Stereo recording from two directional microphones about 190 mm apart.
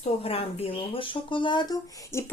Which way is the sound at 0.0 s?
30° left (ahead or behind).